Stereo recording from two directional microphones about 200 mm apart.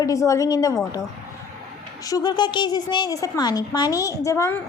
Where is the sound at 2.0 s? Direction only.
15° left (ahead or behind).